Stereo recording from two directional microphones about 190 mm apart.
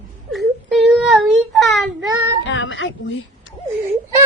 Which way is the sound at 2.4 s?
80° left.